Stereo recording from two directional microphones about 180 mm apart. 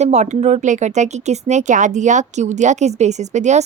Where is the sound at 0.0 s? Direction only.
40° right (ahead or behind).